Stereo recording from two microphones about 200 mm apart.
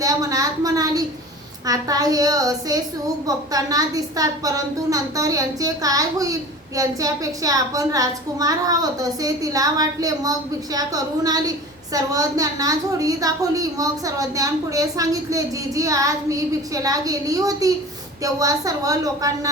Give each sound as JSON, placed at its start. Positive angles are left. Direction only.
{"t": 0.0, "sound": "a woman's voice", "side_deg": -15}